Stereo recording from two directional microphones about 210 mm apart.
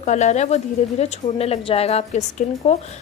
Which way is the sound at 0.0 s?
35° left (ahead or behind).